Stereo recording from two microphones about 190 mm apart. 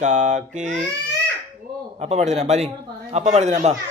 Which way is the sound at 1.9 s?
35° right (ahead or behind).